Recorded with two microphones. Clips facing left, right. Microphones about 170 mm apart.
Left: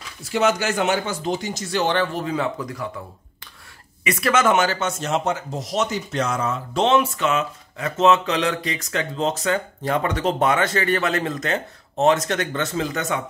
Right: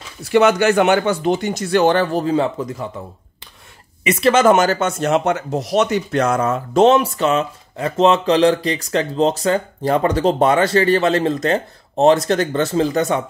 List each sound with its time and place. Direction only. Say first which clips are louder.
0.2 s speech: right 7 dB; 65° right (ahead or behind); by 2.9 s 25° right (ahead or behind)
4.0 s speech: right 6 dB; 25° right (ahead or behind)